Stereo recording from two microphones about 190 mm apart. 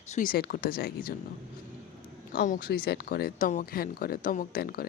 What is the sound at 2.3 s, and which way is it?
A woman's voice, 45° left (ahead or behind).